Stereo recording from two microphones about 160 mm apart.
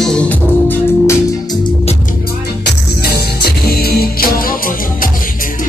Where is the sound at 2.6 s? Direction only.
75° left (ahead or behind).